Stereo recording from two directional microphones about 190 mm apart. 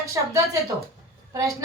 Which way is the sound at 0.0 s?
15° right (ahead or behind).